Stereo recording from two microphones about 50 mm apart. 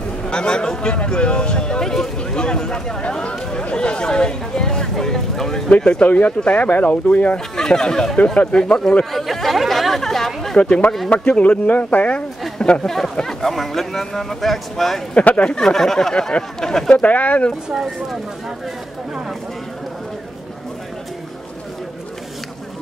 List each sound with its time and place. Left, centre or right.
0.3 s speech: centre
5.8 s speech: left
7.5 s speech: centre
8.4 s speech: left
9.1 s chatter: centre
10.6 s speech: left
12.5 s a sound: left
12.8 s speech: centre
15.1 s speech: left
15.5 s speech: centre
16.9 s speech: left